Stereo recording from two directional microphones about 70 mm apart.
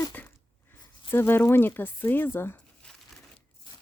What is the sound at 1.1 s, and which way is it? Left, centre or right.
Speech, left.